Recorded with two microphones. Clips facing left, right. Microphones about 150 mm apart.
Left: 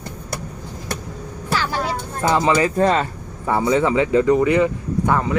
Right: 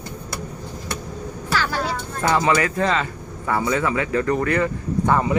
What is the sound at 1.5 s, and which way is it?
Music, 25° left (ahead or behind).